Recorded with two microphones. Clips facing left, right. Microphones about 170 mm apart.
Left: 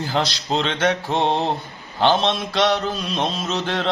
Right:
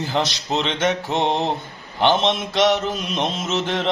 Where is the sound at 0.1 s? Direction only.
20° right (ahead or behind).